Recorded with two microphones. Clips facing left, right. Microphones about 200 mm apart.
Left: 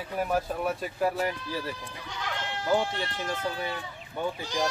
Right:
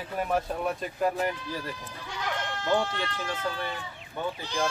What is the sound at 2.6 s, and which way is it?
Speech, 10° left (ahead or behind).